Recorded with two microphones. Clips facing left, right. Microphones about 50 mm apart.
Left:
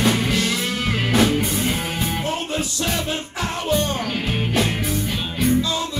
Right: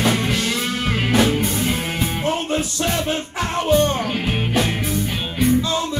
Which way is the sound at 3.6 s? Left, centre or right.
Right.